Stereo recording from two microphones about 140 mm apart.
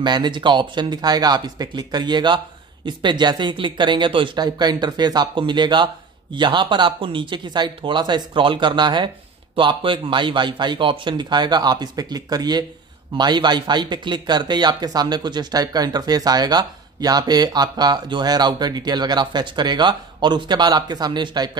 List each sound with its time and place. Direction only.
0.0 s speech: 30° right (ahead or behind)